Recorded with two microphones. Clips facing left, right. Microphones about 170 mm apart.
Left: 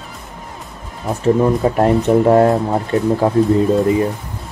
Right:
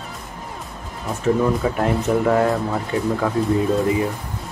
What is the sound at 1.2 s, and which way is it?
Speech, 30° left (ahead or behind).